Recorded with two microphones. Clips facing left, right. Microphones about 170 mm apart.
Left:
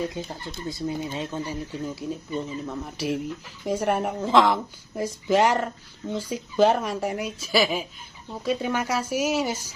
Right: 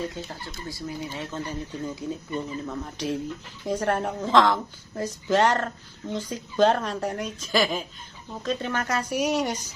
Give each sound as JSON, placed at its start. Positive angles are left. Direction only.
{"t": 0.1, "sound": "a woman's voice", "side_deg": 15}